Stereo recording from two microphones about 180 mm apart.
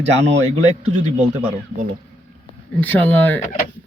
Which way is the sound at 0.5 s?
40° right (ahead or behind).